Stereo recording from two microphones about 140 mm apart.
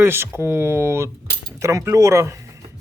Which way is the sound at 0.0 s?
15° right (ahead or behind).